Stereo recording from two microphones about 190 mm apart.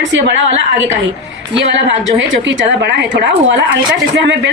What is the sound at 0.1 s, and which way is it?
A woman's voice, 70° right (ahead or behind).